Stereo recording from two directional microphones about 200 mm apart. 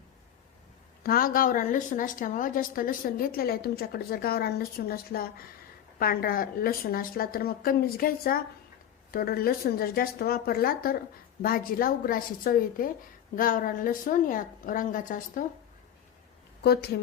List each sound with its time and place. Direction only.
1.0 s a woman's voice: 45° left (ahead or behind)